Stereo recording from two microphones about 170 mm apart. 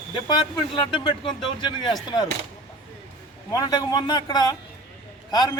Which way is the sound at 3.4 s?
25° left (ahead or behind).